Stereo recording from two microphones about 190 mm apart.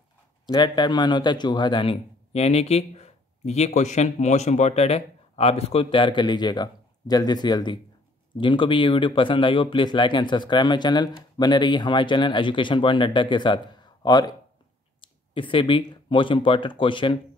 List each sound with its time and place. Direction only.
0.5 s speech: 25° left (ahead or behind)